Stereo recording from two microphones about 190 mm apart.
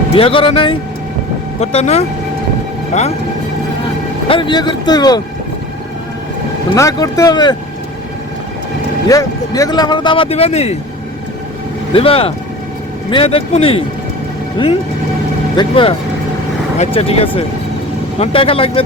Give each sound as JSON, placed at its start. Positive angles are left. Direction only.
{"t": 0.1, "sound": "speech", "side_deg": 30}
{"t": 4.3, "sound": "speech", "side_deg": 25}
{"t": 6.7, "sound": "speech", "side_deg": 15}
{"t": 9.0, "sound": "speech", "side_deg": 20}
{"t": 11.9, "sound": "speech", "side_deg": 30}